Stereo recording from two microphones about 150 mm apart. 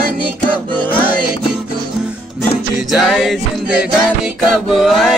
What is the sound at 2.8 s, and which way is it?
Music, 5° right (ahead or behind).